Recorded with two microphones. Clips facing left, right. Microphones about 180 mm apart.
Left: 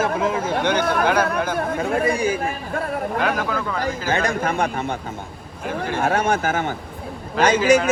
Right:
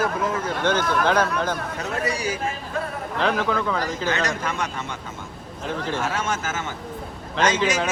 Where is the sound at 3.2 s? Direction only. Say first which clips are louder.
Right 4 dB; 5° left (ahead or behind).